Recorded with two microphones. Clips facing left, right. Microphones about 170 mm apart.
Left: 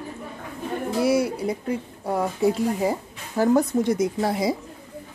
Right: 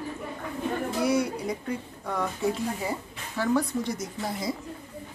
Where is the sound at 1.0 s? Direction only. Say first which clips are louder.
Left 5 dB; 5° left (ahead or behind).